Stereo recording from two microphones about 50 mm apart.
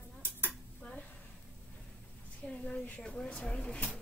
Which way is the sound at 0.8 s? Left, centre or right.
Left.